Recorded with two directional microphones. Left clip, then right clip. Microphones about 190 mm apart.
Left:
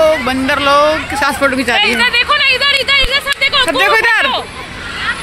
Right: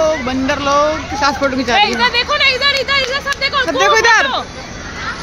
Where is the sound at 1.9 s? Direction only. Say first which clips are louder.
Left 3 dB; 30° right (ahead or behind).